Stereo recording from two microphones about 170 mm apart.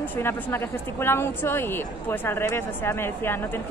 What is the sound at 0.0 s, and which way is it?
Speech, 10° left (ahead or behind).